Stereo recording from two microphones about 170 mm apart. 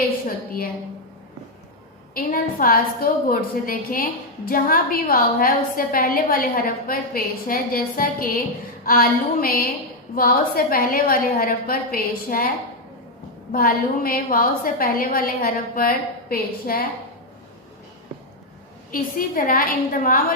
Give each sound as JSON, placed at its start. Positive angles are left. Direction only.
{"t": 2.1, "sound": "a woman's voice", "side_deg": 55}
{"t": 13.5, "sound": "a woman's voice", "side_deg": 60}
{"t": 18.9, "sound": "a woman's voice", "side_deg": 55}